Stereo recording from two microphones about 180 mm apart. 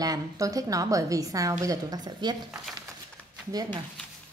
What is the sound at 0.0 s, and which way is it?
A woman's voice, 20° right (ahead or behind).